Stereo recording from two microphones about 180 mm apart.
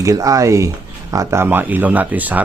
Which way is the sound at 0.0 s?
20° right (ahead or behind).